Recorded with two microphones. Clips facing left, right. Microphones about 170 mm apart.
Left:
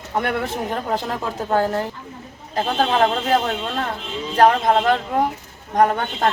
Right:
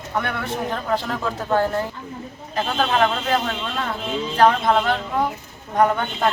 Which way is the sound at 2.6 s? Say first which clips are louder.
Left 2 dB; 30° left (ahead or behind).